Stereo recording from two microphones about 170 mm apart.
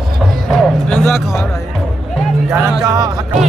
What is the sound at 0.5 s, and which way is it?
Music, 5° left (ahead or behind).